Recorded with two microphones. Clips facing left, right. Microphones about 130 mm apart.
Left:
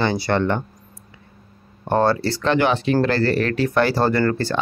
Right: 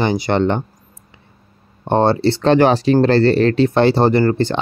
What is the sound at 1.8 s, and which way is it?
Speech, 25° right (ahead or behind).